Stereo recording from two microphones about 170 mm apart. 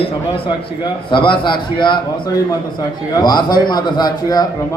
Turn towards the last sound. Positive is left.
turn(degrees=25)  # may be behind; listen again after turning